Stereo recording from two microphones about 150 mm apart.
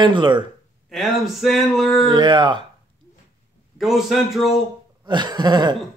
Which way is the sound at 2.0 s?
30° right (ahead or behind).